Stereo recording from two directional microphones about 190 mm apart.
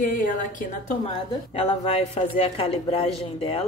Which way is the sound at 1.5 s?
30° left (ahead or behind).